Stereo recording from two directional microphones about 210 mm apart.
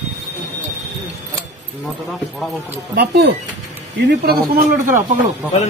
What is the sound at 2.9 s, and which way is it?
Speech, 50° right (ahead or behind).